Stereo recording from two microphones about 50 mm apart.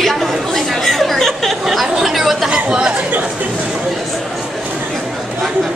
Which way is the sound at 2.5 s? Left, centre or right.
Centre.